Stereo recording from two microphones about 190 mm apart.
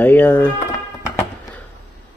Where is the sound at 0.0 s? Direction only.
10° left (ahead or behind).